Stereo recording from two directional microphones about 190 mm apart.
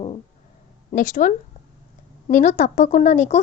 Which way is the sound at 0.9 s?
45° left (ahead or behind).